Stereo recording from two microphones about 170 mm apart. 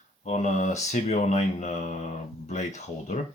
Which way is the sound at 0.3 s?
45° left (ahead or behind).